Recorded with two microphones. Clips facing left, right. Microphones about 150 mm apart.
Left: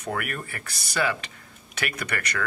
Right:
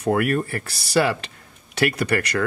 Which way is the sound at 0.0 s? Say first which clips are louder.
Right 11 dB; 35° right (ahead or behind).